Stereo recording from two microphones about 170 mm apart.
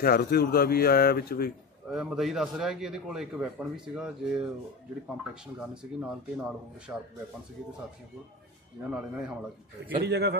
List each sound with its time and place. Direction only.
0.0 s speech: 60° left (ahead or behind)
1.9 s a man's voice: centre (ahead or behind)
5.3 s a man's voice: 5° right (ahead or behind)
8.9 s a man's voice: 5° right (ahead or behind)
10.0 s a man's voice: 75° right (ahead or behind)